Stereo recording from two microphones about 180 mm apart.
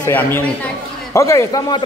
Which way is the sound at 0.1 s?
10° left (ahead or behind).